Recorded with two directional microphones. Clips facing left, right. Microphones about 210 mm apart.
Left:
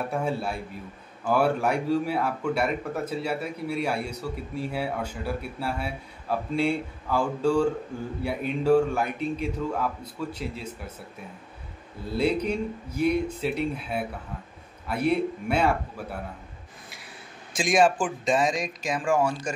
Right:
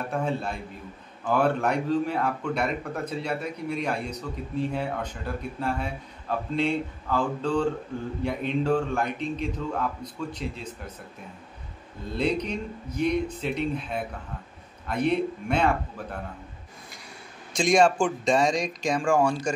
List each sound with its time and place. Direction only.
0.1 s speech: 5° left (ahead or behind)
12.1 s speech: 5° left (ahead or behind)
17.5 s a man's voice: 5° left (ahead or behind)